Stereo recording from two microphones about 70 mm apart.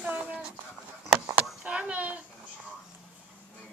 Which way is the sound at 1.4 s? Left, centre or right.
Centre.